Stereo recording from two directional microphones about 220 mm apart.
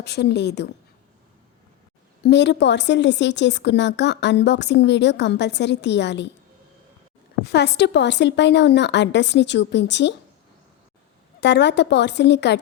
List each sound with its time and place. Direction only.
0.0 s a woman's voice: 50° left (ahead or behind)
2.2 s a woman's voice: 50° left (ahead or behind)
7.4 s a woman's voice: 50° left (ahead or behind)
11.3 s a woman's voice: 50° left (ahead or behind)